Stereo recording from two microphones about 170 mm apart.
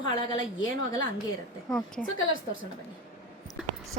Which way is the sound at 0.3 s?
25° left (ahead or behind).